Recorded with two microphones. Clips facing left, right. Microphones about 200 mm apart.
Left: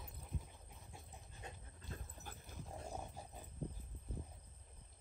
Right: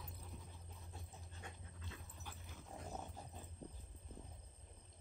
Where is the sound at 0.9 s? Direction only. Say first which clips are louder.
Even; 15° left (ahead or behind).